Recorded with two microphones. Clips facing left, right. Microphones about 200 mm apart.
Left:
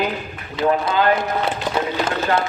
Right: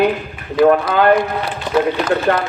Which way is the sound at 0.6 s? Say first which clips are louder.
Right 8 dB; 25° left (ahead or behind).